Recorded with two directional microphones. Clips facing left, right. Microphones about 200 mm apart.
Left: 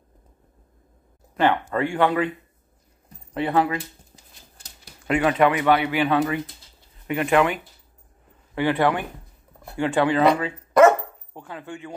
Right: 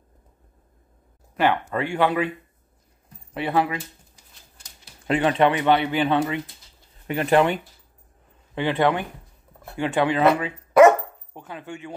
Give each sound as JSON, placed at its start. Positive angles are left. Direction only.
{"t": 1.3, "sound": "speech", "side_deg": -10}
{"t": 3.3, "sound": "speech", "side_deg": -15}
{"t": 5.0, "sound": "speech", "side_deg": -30}
{"t": 8.5, "sound": "speech", "side_deg": -20}
{"t": 10.4, "sound": "dog", "side_deg": -15}